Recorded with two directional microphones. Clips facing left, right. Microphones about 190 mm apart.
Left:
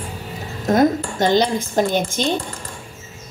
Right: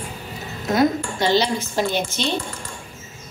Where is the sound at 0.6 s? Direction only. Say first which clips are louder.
Left 3 dB; 50° left (ahead or behind).